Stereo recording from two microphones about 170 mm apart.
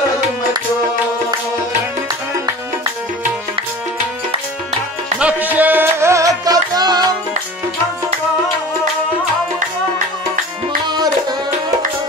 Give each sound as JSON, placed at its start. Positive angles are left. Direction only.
{"t": 5.2, "sound": "music", "side_deg": -10}
{"t": 10.9, "sound": "music", "side_deg": -25}